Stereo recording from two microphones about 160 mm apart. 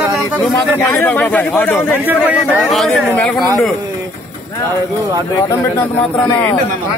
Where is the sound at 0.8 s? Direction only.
10° left (ahead or behind).